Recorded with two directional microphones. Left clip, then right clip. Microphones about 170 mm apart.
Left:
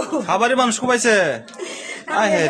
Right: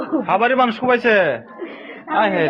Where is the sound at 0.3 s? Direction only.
40° left (ahead or behind).